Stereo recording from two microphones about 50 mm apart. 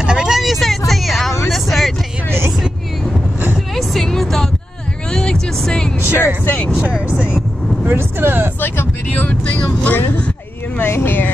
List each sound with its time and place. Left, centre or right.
0.0 s vehicle: centre
3.7 s music: centre
6.1 s vehicle: left
6.8 s vehicle: right
7.9 s vehicle: right
8.5 s vehicle: left
9.7 s vehicle: left